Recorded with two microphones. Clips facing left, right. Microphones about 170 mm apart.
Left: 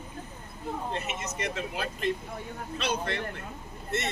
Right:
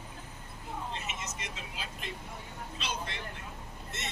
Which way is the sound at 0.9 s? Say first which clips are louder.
Left 6 dB; 60° left (ahead or behind).